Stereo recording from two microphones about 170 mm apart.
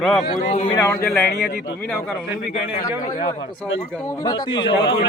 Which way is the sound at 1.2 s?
65° left (ahead or behind).